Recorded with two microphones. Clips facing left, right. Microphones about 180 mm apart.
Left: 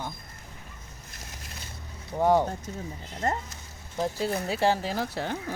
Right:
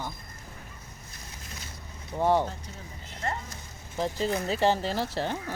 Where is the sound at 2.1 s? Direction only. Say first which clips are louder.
Left 2 dB; 10° left (ahead or behind).